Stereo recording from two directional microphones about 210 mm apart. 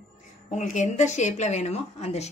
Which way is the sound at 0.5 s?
35° left (ahead or behind).